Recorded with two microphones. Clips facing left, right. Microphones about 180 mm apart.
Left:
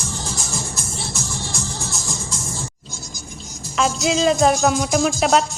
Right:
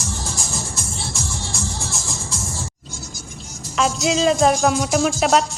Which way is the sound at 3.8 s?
Centre (ahead or behind).